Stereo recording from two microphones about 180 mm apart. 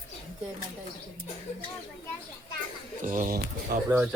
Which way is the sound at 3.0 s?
45° right (ahead or behind).